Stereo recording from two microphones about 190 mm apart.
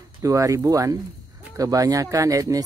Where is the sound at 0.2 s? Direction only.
15° right (ahead or behind).